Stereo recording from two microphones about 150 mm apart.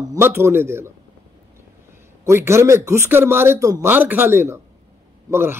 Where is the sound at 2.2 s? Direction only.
20° right (ahead or behind).